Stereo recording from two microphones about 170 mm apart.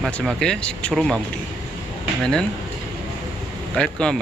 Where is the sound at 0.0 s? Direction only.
Centre (ahead or behind).